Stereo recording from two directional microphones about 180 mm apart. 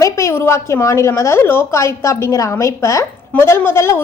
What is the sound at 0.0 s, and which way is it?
A woman's voice, 15° left (ahead or behind).